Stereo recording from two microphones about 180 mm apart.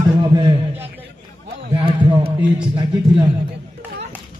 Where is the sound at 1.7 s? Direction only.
25° right (ahead or behind).